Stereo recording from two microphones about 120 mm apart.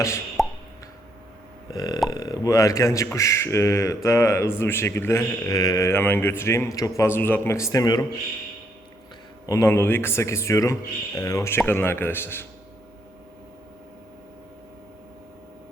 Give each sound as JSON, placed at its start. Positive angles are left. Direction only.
{"t": 0.4, "sound": "plop", "side_deg": 0}
{"t": 1.7, "sound": "speech", "side_deg": 35}
{"t": 9.5, "sound": "speech", "side_deg": 25}